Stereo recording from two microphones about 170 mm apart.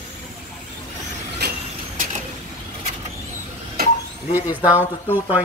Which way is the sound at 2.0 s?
50° right (ahead or behind).